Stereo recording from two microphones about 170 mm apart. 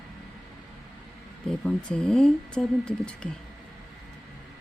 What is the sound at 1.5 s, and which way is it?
Speech, 5° left (ahead or behind).